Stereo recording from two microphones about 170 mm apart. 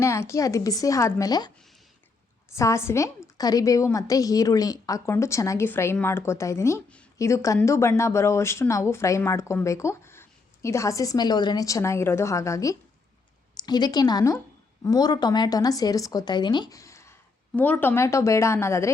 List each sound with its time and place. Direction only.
0.0 s speech: 15° left (ahead or behind)
2.6 s a woman's voice: 15° left (ahead or behind)